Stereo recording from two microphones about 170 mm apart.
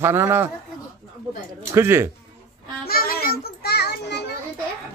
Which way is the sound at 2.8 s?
60° left (ahead or behind).